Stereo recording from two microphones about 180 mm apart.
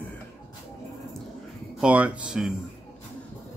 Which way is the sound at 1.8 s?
5° right (ahead or behind).